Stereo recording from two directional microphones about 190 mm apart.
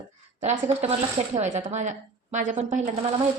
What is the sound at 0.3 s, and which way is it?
A woman's voice, 35° right (ahead or behind).